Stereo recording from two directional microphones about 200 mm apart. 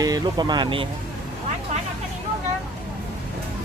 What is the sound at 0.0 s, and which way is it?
Speech, 20° right (ahead or behind).